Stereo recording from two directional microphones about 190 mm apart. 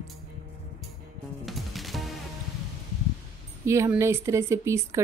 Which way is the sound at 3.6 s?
15° right (ahead or behind).